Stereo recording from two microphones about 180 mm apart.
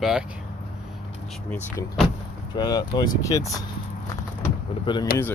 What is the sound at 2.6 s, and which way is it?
Speech, 20° left (ahead or behind).